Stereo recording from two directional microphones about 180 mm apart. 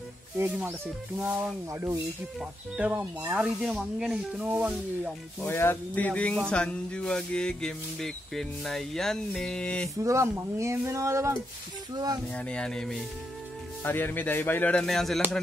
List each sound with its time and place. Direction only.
0.4 s speech: 10° right (ahead or behind)
5.4 s speech: 10° left (ahead or behind)
10.0 s speech: 15° right (ahead or behind)
12.4 s speech: 5° left (ahead or behind)